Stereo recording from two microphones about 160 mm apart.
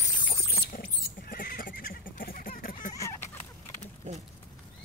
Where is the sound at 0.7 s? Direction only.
60° left (ahead or behind).